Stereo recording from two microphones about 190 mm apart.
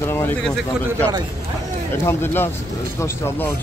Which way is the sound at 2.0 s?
10° left (ahead or behind).